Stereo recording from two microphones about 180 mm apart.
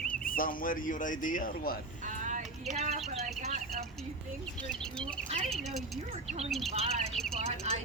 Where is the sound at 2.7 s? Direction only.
40° right (ahead or behind).